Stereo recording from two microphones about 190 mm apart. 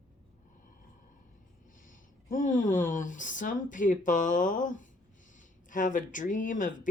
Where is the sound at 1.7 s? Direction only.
45° left (ahead or behind).